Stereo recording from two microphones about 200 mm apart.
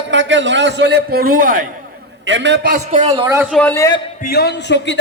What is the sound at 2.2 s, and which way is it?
Speech, 65° right (ahead or behind).